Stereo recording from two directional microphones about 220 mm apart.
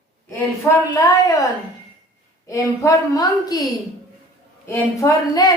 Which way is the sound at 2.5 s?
15° left (ahead or behind).